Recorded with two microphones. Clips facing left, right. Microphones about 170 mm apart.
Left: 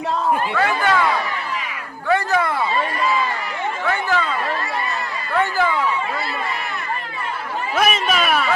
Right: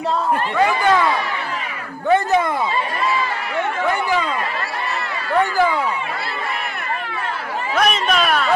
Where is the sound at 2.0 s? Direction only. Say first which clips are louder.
Right 3 dB; 20° right (ahead or behind).